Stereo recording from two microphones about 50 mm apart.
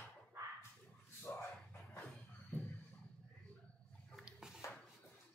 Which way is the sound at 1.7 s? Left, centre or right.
Left.